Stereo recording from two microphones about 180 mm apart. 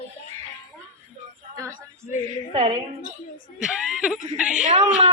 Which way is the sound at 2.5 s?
30° right (ahead or behind).